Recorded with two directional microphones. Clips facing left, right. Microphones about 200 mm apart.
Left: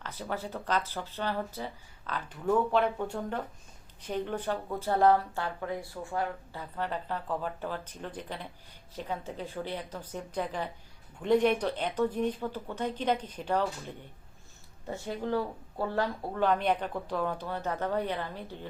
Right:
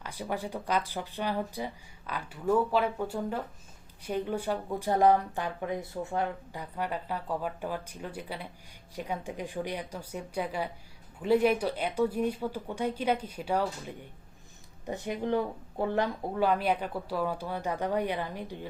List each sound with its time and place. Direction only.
0.0 s speech: 15° right (ahead or behind)
16.4 s speech: 5° right (ahead or behind)